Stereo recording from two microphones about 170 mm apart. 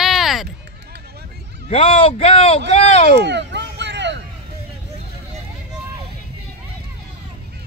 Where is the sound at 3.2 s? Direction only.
90° right.